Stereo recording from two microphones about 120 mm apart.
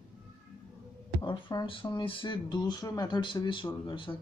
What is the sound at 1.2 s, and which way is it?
Speech, 40° left (ahead or behind).